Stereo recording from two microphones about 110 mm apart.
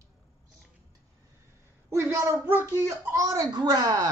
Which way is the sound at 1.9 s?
25° right (ahead or behind).